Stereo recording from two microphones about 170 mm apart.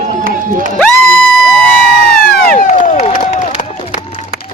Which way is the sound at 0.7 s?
5° left (ahead or behind).